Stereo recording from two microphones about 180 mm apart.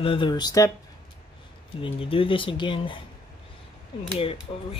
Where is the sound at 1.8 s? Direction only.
30° left (ahead or behind).